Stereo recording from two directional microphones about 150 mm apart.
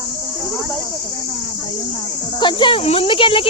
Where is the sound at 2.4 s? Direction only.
30° left (ahead or behind).